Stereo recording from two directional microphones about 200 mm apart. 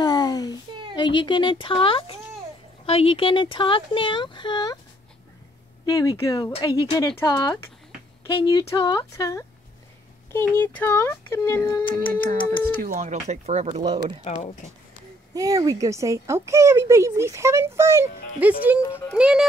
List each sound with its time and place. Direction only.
0.0 s a sound: 20° left (ahead or behind)
0.9 s speech: 20° left (ahead or behind)
5.9 s speech: 15° left (ahead or behind)
12.8 s speech: 40° right (ahead or behind)
13.8 s speech: 20° right (ahead or behind)
14.2 s speech: 30° left (ahead or behind)
15.3 s speech: 15° right (ahead or behind)
18.8 s speech: 10° left (ahead or behind)
19.1 s speech: 5° right (ahead or behind)